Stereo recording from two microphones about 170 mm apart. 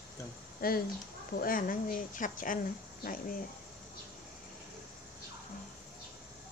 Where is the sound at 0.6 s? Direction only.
60° left (ahead or behind).